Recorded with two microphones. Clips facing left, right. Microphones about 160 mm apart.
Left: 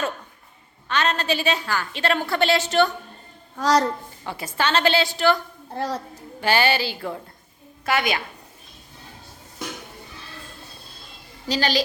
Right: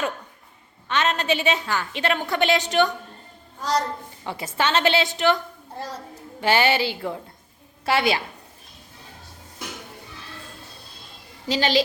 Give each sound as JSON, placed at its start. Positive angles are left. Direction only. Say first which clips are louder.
{"t": 0.9, "sound": "a woman's voice", "louder": "even", "side_deg": -20}
{"t": 3.6, "sound": "speech", "louder": "left 5 dB", "side_deg": 90}
{"t": 4.3, "sound": "a woman's voice", "louder": "even", "side_deg": -25}
{"t": 5.7, "sound": "a woman's voice", "louder": "left 7 dB", "side_deg": 65}
{"t": 6.4, "sound": "a woman's voice", "louder": "right 1 dB", "side_deg": -20}
{"t": 11.4, "sound": "a woman's voice", "louder": "right 1 dB", "side_deg": -25}